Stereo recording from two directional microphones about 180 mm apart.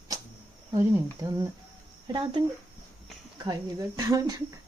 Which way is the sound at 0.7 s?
15° right (ahead or behind).